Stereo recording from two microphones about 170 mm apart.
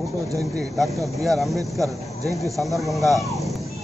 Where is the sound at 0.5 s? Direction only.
Centre (ahead or behind).